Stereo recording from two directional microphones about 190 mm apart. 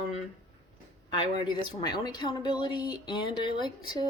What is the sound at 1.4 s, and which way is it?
Speech, 20° left (ahead or behind).